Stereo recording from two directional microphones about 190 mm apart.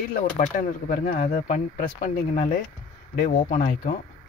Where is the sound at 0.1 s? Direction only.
45° left (ahead or behind).